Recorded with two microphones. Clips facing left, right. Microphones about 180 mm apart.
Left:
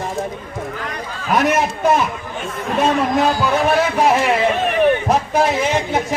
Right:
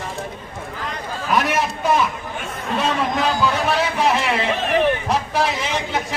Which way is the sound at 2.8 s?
50° left (ahead or behind).